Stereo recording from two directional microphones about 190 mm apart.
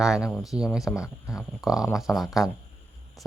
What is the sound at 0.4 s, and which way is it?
Speech, 5° right (ahead or behind).